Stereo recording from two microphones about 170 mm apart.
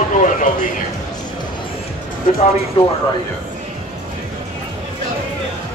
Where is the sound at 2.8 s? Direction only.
35° left (ahead or behind).